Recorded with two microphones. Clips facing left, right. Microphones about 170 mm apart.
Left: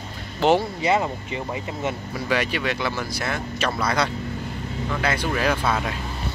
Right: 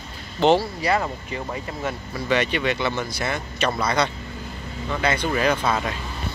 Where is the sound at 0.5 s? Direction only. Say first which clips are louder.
Left 1 dB; 20° left (ahead or behind).